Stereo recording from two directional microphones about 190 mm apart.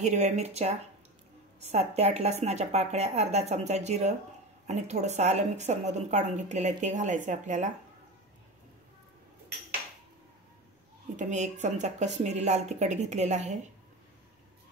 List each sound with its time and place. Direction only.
0.0 s a woman's voice: 35° right (ahead or behind)
11.1 s a woman's voice: 40° right (ahead or behind)